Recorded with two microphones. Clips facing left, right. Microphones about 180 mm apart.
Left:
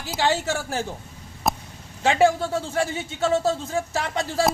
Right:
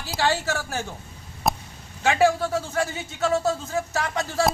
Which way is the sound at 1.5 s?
Centre (ahead or behind).